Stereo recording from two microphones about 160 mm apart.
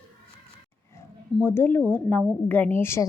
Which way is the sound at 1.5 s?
15° left (ahead or behind).